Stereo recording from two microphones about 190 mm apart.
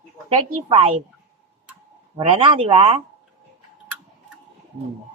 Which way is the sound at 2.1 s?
30° right (ahead or behind).